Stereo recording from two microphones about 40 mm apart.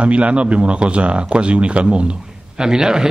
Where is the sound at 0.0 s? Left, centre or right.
Right.